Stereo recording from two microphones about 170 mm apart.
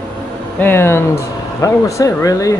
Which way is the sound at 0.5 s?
10° left (ahead or behind).